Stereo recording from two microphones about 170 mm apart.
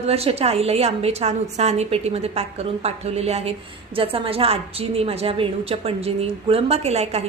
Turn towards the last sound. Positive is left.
turn(degrees=-40)  # may be behind; listen again after turning